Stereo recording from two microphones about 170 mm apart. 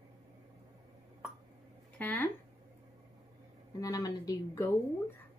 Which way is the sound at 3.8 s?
20° left (ahead or behind).